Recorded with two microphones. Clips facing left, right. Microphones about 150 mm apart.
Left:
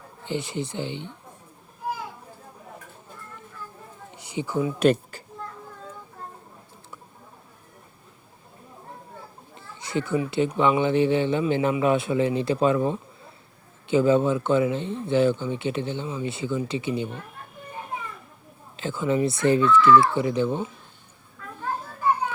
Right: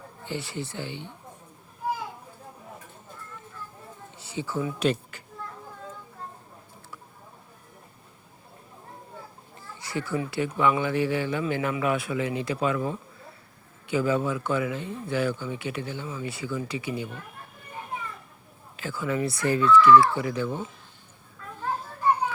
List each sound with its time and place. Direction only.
0.3 s speech: 20° left (ahead or behind)
4.1 s a sound: 15° left (ahead or behind)
9.8 s speech: 20° left (ahead or behind)
18.8 s speech: 25° left (ahead or behind)